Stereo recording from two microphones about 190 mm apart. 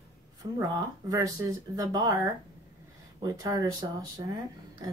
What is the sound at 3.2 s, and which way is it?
Speech, 20° right (ahead or behind).